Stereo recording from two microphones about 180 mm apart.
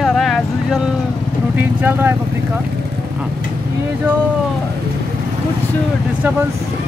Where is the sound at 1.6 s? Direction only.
10° right (ahead or behind).